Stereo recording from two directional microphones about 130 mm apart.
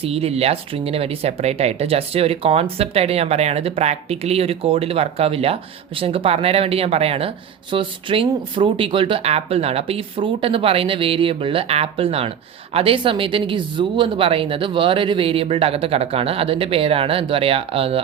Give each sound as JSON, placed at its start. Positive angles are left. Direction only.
{"t": 0.0, "sound": "speech", "side_deg": -50}